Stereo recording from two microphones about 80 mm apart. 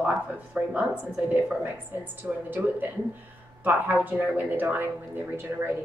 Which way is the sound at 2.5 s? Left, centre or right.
Right.